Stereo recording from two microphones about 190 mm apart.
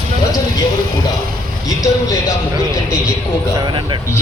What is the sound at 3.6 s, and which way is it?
Speech, 25° right (ahead or behind).